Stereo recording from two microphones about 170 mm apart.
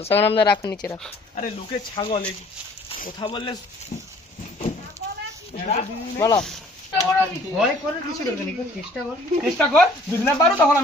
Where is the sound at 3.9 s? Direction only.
40° left (ahead or behind).